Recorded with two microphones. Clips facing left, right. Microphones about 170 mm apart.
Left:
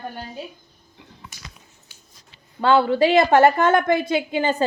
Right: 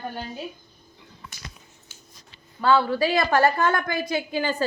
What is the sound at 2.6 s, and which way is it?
A woman's voice, 25° left (ahead or behind).